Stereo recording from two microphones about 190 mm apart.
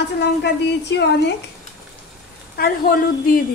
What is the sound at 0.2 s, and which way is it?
Speech, 65° left (ahead or behind).